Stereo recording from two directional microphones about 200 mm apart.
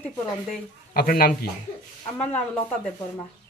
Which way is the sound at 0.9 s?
45° left (ahead or behind).